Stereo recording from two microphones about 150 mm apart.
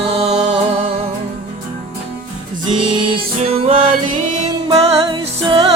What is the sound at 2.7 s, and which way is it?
Music, 35° right (ahead or behind).